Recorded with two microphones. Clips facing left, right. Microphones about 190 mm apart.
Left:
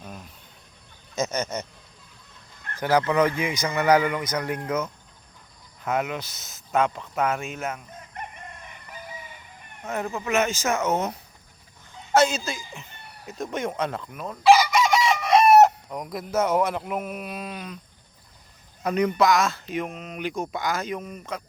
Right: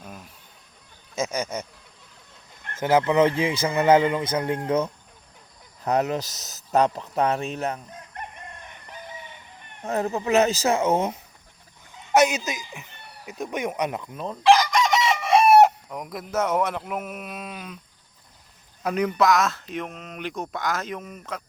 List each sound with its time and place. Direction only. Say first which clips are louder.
0.0 s cricket: left 1 dB; 5° right (ahead or behind)
1.1 s speech: even; 10° right (ahead or behind)
2.7 s speech: right 2 dB; 20° right (ahead or behind)
9.8 s speech: right 4 dB; 35° right (ahead or behind)
12.1 s a woman's voice: right 1 dB; 15° right (ahead or behind)
14.4 s chicken: left 1 dB; 5° left (ahead or behind)
18.8 s speech: left 1 dB; 5° right (ahead or behind)